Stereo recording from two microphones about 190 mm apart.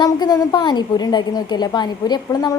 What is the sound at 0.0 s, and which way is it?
A woman's voice, 20° left (ahead or behind).